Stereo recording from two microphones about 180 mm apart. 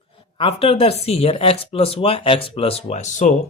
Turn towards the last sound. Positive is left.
turn(degrees=40)  # may be behind; listen again after turning